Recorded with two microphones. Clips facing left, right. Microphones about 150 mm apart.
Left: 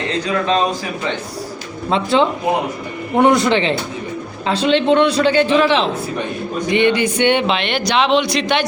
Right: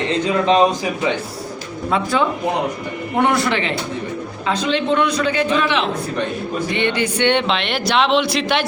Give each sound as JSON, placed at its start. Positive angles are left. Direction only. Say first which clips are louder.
{"t": 0.4, "sound": "a man's voice", "louder": "right 4 dB", "side_deg": -20}
{"t": 1.9, "sound": "a man's voice", "louder": "left 3 dB", "side_deg": 25}
{"t": 6.7, "sound": "speech", "louder": "left 7 dB", "side_deg": 15}